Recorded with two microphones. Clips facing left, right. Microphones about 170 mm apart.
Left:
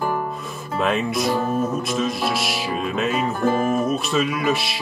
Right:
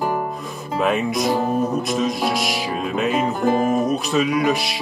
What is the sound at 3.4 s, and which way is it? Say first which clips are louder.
Music: right 1 dB; 15° right (ahead or behind).